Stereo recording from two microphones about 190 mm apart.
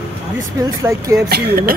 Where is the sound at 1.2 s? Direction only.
55° right (ahead or behind).